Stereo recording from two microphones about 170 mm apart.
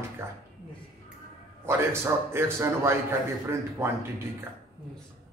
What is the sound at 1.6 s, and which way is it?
A man's voice, 15° right (ahead or behind).